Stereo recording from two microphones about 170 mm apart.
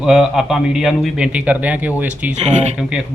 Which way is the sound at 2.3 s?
40° right (ahead or behind).